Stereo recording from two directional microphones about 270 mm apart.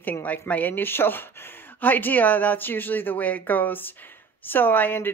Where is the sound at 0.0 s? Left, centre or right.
Centre.